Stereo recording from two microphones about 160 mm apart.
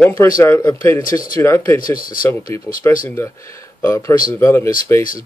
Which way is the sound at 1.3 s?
15° left (ahead or behind).